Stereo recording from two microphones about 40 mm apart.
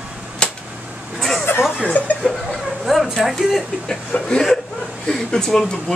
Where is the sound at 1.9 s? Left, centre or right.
Left.